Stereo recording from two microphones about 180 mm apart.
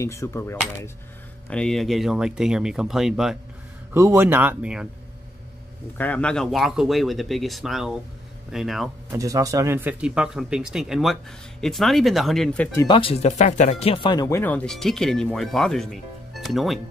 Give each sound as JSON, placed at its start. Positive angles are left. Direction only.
{"t": 0.0, "sound": "speech", "side_deg": 15}
{"t": 1.5, "sound": "speech", "side_deg": 5}
{"t": 3.9, "sound": "speech", "side_deg": -15}
{"t": 5.9, "sound": "speech", "side_deg": 10}
{"t": 9.1, "sound": "speech", "side_deg": -20}
{"t": 12.7, "sound": "speech", "side_deg": 25}